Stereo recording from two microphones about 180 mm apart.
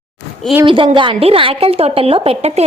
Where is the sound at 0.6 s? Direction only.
30° right (ahead or behind).